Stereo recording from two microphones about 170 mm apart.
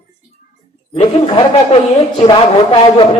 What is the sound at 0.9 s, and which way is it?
Speech, 35° left (ahead or behind).